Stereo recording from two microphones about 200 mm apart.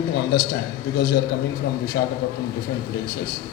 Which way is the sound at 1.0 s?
55° left (ahead or behind).